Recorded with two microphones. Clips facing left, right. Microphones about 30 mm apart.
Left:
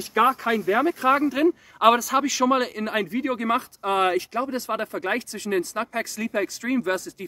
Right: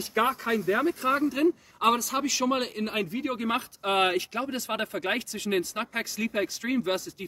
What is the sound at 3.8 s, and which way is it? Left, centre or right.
Speech, right.